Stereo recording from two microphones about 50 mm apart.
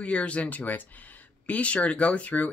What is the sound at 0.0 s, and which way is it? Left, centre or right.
Speech, left.